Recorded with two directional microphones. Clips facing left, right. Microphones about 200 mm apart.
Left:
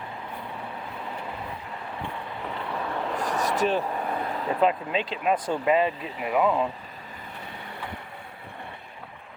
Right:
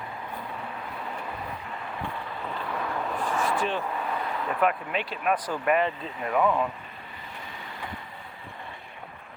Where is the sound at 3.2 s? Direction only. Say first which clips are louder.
Left 2 dB; 40° left (ahead or behind); by 6.5 s 15° left (ahead or behind).